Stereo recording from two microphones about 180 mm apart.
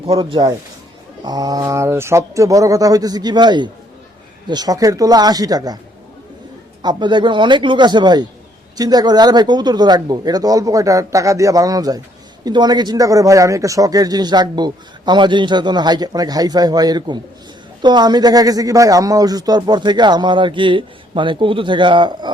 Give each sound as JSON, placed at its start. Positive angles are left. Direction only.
{"t": 0.0, "sound": "a man's voice", "side_deg": -30}
{"t": 6.8, "sound": "a man's voice", "side_deg": -25}